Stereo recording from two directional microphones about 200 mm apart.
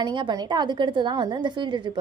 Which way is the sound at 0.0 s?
20° right (ahead or behind).